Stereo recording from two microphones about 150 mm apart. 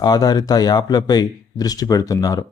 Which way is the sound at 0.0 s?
25° left (ahead or behind).